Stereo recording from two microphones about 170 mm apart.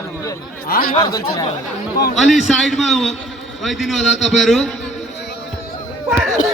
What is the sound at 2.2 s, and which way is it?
A man's voice, centre (ahead or behind).